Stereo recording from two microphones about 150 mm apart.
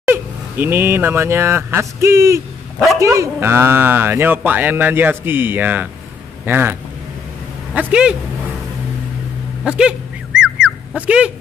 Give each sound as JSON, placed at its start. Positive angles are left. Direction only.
{"t": 0.1, "sound": "speech", "side_deg": -15}
{"t": 9.7, "sound": "speech", "side_deg": -5}
{"t": 10.4, "sound": "chicken", "side_deg": 0}
{"t": 11.0, "sound": "speech", "side_deg": -10}